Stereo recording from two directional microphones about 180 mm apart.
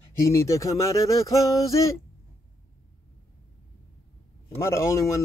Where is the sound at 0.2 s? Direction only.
15° left (ahead or behind).